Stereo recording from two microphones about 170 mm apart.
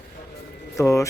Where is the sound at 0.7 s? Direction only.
20° left (ahead or behind).